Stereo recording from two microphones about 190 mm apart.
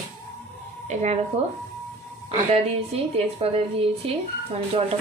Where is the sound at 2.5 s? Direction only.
30° right (ahead or behind).